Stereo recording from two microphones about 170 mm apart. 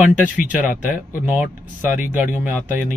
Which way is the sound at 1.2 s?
10° right (ahead or behind).